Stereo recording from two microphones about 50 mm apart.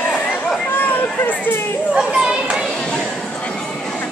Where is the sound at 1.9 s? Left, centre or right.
Centre.